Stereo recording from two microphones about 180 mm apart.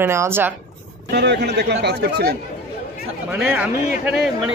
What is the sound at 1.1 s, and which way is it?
Speech, 70° right (ahead or behind).